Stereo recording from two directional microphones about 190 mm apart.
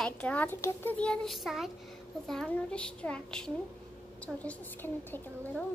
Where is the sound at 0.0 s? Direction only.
5° left (ahead or behind).